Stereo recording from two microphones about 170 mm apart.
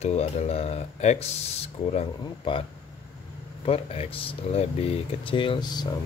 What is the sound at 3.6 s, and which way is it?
Speech, 35° left (ahead or behind).